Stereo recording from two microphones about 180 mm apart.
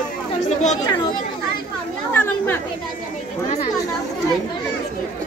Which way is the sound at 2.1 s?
10° left (ahead or behind).